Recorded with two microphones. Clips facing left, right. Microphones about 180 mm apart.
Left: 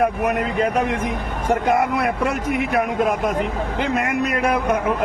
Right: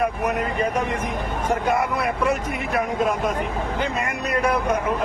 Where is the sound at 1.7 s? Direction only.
55° left (ahead or behind).